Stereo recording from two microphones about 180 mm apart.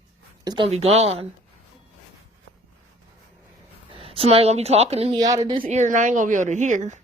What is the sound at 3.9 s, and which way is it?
Speech, 30° right (ahead or behind).